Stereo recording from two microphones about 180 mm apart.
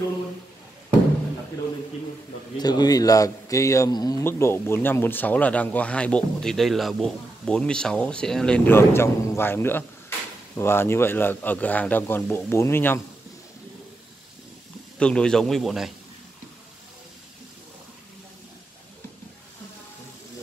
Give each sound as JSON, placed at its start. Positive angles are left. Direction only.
{"t": 2.5, "sound": "a man's voice", "side_deg": 20}
{"t": 15.0, "sound": "a man's voice", "side_deg": 5}